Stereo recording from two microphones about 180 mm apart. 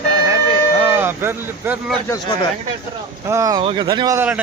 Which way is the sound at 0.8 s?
10° right (ahead or behind).